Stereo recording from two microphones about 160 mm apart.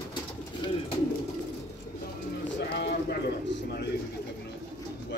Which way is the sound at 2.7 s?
90° left.